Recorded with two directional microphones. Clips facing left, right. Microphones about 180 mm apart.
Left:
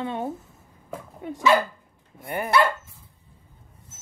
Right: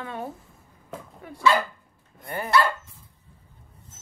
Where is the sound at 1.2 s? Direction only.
25° left (ahead or behind).